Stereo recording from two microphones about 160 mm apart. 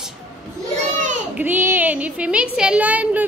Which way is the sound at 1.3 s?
10° right (ahead or behind).